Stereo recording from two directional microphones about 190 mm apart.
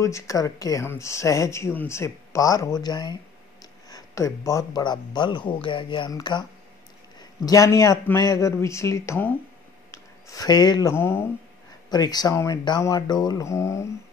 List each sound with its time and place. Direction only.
0.0 s speech: 15° left (ahead or behind)